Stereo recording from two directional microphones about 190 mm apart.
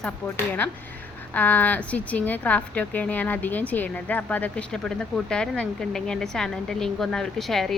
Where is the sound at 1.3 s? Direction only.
10° left (ahead or behind).